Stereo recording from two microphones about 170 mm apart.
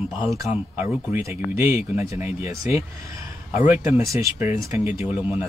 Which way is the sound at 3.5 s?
40° left (ahead or behind).